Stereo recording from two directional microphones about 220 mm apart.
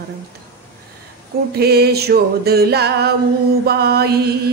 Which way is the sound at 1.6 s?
45° right (ahead or behind).